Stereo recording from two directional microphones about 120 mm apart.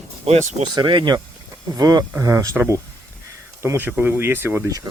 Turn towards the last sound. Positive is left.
turn(degrees=-25)  # may be behind; listen again after turning